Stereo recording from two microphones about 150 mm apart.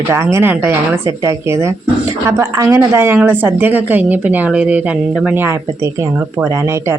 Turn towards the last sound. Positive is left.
turn(degrees=-20)  # may be behind; listen again after turning